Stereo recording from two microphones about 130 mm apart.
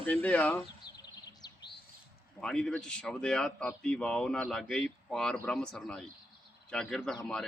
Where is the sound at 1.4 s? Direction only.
30° left (ahead or behind).